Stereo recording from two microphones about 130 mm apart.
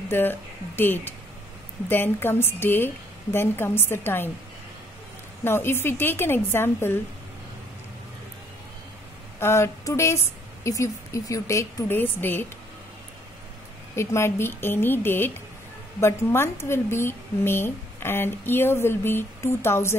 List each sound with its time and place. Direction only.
0.1 s a woman's voice: 15° left (ahead or behind)
5.4 s a woman's voice: 15° left (ahead or behind)
9.4 s a woman's voice: 20° left (ahead or behind)
13.9 s a woman's voice: 20° left (ahead or behind)